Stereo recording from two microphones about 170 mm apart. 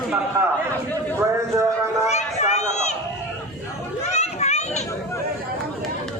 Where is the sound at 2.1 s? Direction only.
40° left (ahead or behind).